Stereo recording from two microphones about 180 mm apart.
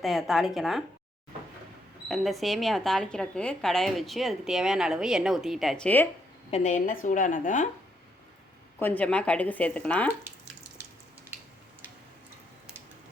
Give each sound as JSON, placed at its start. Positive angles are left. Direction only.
{"t": 0.0, "sound": "speech", "side_deg": 0}
{"t": 2.0, "sound": "speech", "side_deg": 0}
{"t": 6.5, "sound": "a woman's voice", "side_deg": 40}
{"t": 8.8, "sound": "speech", "side_deg": 10}